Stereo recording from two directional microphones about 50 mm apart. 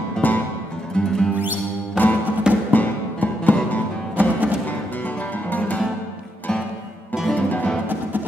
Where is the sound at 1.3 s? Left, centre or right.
Right.